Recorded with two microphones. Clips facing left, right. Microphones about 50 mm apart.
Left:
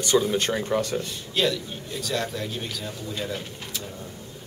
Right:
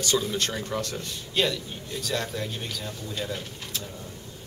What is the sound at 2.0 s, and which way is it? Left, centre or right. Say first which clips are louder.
A man's voice: left 2 dB; centre.